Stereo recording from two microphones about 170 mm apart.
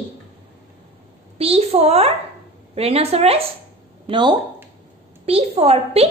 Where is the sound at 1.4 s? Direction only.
35° right (ahead or behind).